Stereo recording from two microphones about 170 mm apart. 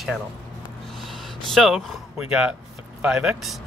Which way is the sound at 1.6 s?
Centre (ahead or behind).